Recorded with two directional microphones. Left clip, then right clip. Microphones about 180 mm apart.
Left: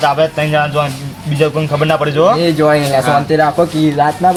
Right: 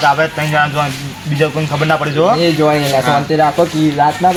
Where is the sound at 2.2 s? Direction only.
10° left (ahead or behind).